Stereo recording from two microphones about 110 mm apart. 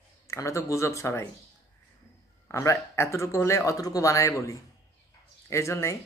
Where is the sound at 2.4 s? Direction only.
25° left (ahead or behind).